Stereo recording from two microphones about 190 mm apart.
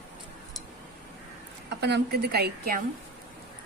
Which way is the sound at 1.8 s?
60° right (ahead or behind).